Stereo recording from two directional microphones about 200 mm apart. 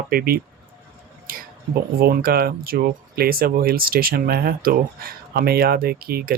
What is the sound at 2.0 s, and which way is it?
Speech, 50° right (ahead or behind).